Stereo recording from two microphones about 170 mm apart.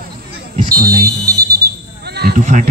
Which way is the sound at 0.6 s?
60° right (ahead or behind).